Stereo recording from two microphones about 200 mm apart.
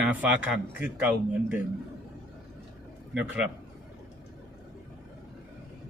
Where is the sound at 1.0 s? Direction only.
5° right (ahead or behind).